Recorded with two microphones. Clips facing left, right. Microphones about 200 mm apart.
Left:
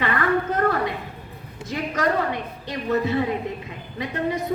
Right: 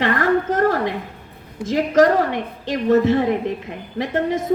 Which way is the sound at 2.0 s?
45° right (ahead or behind).